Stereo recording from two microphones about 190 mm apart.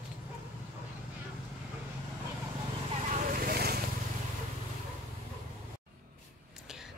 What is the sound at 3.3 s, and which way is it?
Vehicle, 50° right (ahead or behind).